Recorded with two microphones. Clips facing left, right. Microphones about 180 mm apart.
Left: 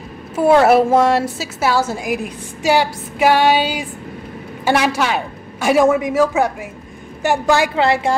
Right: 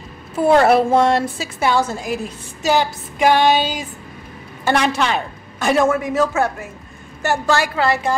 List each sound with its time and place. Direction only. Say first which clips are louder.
0.4 s a woman's voice: left 2 dB; 10° left (ahead or behind); by 8.2 s 25° left (ahead or behind)